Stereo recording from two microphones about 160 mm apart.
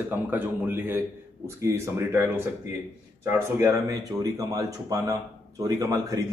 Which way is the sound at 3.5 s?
15° right (ahead or behind).